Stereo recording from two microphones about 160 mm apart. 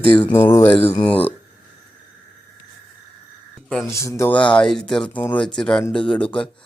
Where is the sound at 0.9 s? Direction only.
35° left (ahead or behind).